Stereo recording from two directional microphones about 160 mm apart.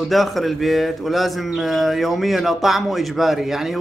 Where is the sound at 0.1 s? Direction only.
Centre (ahead or behind).